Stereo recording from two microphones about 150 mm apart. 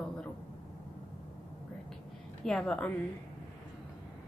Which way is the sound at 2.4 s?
5° left (ahead or behind).